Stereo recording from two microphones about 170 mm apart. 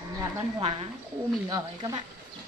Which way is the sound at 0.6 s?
35° right (ahead or behind).